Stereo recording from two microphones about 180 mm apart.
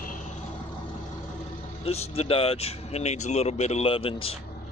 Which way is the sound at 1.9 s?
35° left (ahead or behind).